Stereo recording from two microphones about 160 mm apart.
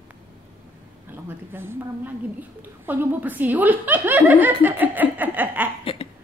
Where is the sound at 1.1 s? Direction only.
15° right (ahead or behind).